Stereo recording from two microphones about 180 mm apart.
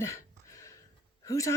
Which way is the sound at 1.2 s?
15° left (ahead or behind).